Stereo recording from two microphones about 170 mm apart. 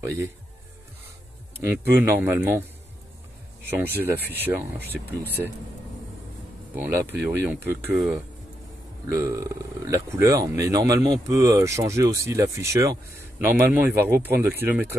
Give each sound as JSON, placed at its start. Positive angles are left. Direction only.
{"t": 1.6, "sound": "speech", "side_deg": -15}
{"t": 3.7, "sound": "speech", "side_deg": -10}
{"t": 6.7, "sound": "speech", "side_deg": -10}